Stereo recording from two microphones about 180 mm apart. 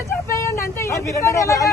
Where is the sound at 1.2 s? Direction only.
15° left (ahead or behind).